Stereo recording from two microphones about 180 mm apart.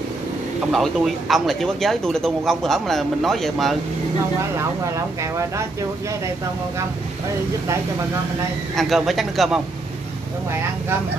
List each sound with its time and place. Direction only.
0.7 s a man's voice: centre (ahead or behind)
4.6 s speech: 15° right (ahead or behind)
8.7 s a man's voice: centre (ahead or behind)